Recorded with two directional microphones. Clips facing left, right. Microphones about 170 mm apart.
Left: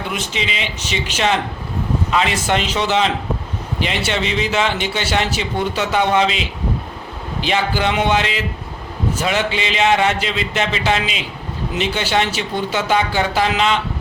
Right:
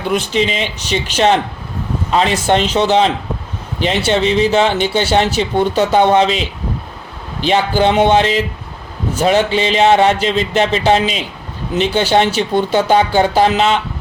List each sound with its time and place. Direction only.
0.1 s speech: 40° right (ahead or behind)
7.4 s speech: 35° right (ahead or behind)